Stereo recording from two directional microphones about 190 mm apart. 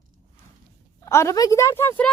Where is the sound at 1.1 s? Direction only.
15° left (ahead or behind).